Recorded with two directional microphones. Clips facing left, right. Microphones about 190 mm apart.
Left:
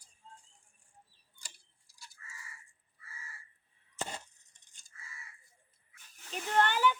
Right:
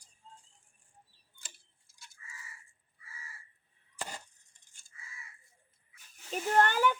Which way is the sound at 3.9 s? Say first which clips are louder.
Left 2 dB; 25° left (ahead or behind).